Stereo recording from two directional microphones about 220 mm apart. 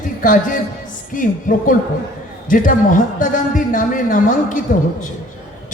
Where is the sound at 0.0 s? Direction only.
40° left (ahead or behind).